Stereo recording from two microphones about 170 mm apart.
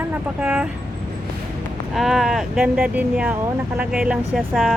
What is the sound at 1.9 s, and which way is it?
Speech, centre (ahead or behind).